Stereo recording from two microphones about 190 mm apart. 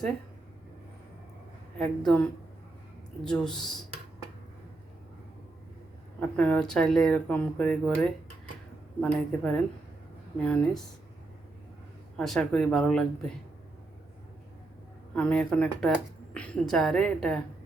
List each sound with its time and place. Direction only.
1.8 s speech: 5° left (ahead or behind)
3.2 s speech: 5° left (ahead or behind)
6.1 s speech: 5° left (ahead or behind)
12.1 s speech: centre (ahead or behind)
15.1 s speech: 5° left (ahead or behind)